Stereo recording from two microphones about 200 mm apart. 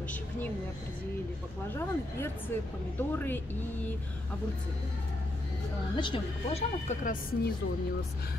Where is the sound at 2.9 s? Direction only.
10° left (ahead or behind).